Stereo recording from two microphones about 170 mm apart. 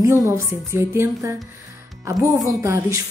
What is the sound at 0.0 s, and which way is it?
A woman's voice, 15° right (ahead or behind).